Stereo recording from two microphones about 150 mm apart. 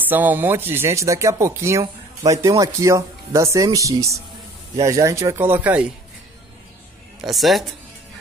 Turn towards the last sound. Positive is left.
turn(degrees=0)  # may be behind; listen again after turning